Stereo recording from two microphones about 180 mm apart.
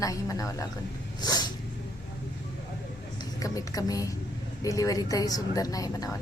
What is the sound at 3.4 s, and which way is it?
A woman's voice, 20° left (ahead or behind).